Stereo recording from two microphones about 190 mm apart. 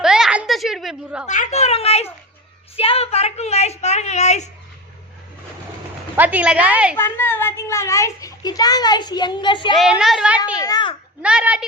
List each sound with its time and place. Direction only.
0.0 s a sound: 5° right (ahead or behind)
1.3 s a woman's voice: 40° left (ahead or behind)
6.1 s a woman's voice: 10° right (ahead or behind)
6.9 s a woman's voice: 10° left (ahead or behind)
9.7 s a woman's voice: centre (ahead or behind)
10.6 s a woman's voice: 20° left (ahead or behind)
11.2 s a woman's voice: 5° right (ahead or behind)